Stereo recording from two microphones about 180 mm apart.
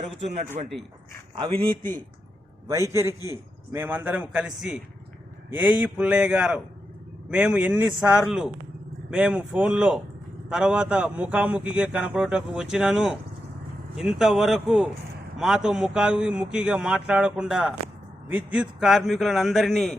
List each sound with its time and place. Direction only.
0.6 s speech: 40° right (ahead or behind)
1.4 s a man's voice: 25° right (ahead or behind)
2.6 s a man's voice: 15° right (ahead or behind); by 20.0 s centre (ahead or behind)